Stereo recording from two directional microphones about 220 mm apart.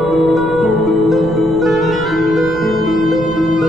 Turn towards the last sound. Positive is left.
turn(degrees=0)  # may be behind; listen again after turning